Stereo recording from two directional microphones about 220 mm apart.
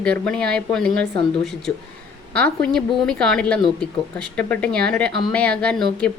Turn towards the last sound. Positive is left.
turn(degrees=5)  # may be behind; listen again after turning